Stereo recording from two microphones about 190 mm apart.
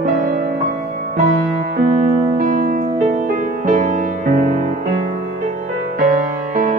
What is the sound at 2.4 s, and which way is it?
Music, 45° right (ahead or behind).